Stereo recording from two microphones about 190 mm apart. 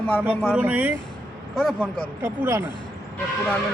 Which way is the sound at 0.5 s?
10° right (ahead or behind).